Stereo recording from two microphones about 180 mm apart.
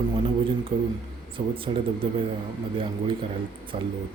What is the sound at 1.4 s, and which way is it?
Speech, 30° right (ahead or behind).